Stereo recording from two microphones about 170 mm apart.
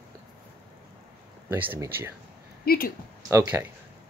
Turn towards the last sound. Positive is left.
turn(degrees=-15)  # may be behind; listen again after turning